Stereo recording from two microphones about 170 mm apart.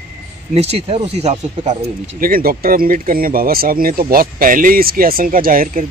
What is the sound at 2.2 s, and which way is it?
Speech, 60° right (ahead or behind).